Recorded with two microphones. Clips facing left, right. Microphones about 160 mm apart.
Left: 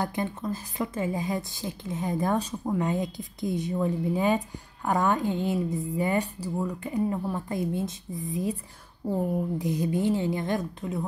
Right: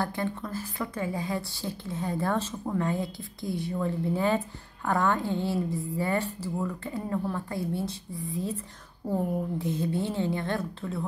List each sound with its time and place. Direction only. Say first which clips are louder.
0.0 s a woman's voice: left 1 dB; 20° left (ahead or behind)
9.6 s a woman's voice: left 2 dB; 15° left (ahead or behind)